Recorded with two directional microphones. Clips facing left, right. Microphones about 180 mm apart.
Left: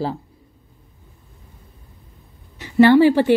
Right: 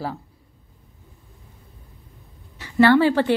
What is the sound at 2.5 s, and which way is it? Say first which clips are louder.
Speech: left 4 dB; 15° left (ahead or behind).